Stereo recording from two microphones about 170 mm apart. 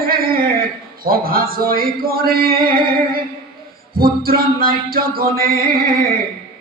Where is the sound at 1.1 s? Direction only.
60° right (ahead or behind).